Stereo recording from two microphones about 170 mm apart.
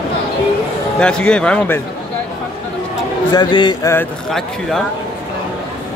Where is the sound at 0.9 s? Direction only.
5° left (ahead or behind).